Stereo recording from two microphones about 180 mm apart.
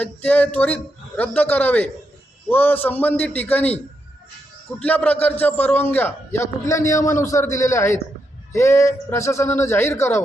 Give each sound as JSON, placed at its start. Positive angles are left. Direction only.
{"t": 0.0, "sound": "a man's voice", "side_deg": 10}
{"t": 4.8, "sound": "a man's voice", "side_deg": 10}